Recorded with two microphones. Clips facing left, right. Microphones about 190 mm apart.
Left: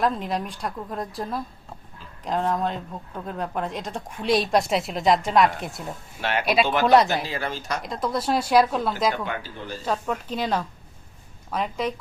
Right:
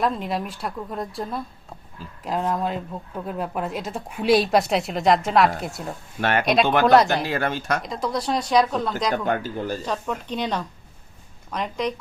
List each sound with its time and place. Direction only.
0.0 s speech: centre (ahead or behind)
6.1 s speech: 50° right (ahead or behind)
6.4 s speech: 5° left (ahead or behind)
7.3 s speech: 60° right (ahead or behind)
7.8 s speech: centre (ahead or behind)
9.2 s speech: 45° right (ahead or behind)
9.8 s speech: 5° left (ahead or behind)